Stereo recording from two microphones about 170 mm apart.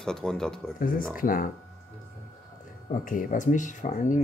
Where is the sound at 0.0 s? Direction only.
5° left (ahead or behind).